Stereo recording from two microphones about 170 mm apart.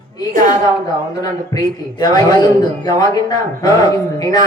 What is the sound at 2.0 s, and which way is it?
Speech, 25° left (ahead or behind).